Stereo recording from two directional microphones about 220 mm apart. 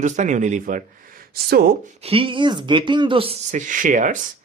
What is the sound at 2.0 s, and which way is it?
Speech, 25° right (ahead or behind).